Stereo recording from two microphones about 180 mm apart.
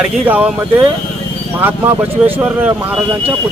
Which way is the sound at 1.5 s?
10° right (ahead or behind).